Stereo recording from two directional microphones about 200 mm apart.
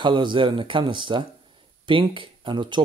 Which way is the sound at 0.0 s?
25° right (ahead or behind).